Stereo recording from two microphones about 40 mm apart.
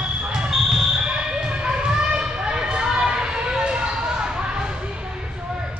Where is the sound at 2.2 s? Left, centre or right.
Centre.